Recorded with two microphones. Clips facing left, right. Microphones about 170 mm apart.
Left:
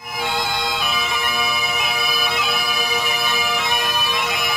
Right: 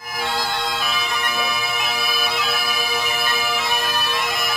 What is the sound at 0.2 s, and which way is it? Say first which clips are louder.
Bagpipes: left 1 dB; centre (ahead or behind).